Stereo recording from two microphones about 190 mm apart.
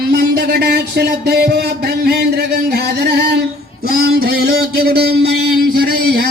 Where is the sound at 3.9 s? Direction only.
55° right (ahead or behind).